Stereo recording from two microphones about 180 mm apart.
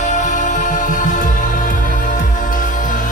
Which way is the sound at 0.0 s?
40° left (ahead or behind).